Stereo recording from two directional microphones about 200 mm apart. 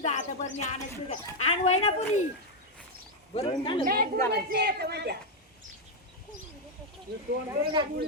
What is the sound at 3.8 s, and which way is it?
A woman's voice, 45° right (ahead or behind).